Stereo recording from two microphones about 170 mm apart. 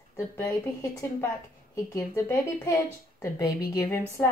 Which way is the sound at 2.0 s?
15° left (ahead or behind).